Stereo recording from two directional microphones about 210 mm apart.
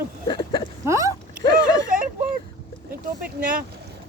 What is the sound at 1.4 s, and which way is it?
Speech, 15° left (ahead or behind).